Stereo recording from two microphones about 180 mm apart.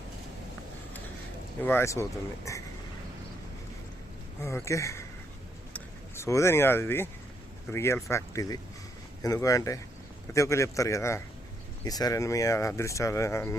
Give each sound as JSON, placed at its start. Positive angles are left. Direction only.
{"t": 1.6, "sound": "speech", "side_deg": 15}
{"t": 4.4, "sound": "speech", "side_deg": 15}